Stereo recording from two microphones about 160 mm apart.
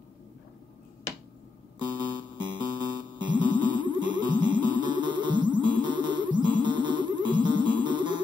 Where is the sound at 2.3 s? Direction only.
30° right (ahead or behind).